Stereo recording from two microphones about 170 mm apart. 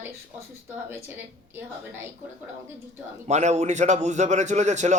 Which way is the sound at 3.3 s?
40° right (ahead or behind).